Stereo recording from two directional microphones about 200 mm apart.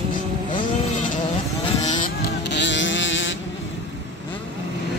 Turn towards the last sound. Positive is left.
turn(degrees=65)  # may be behind; listen again after turning